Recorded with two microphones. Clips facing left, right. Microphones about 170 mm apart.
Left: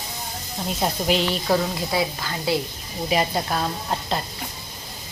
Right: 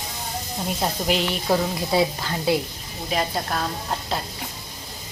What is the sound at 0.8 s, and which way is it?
Speech, centre (ahead or behind).